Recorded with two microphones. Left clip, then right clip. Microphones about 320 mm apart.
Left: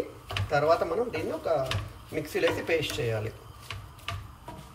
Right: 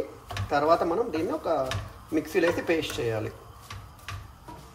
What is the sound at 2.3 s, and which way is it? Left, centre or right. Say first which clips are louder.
Speech: right 1 dB; right.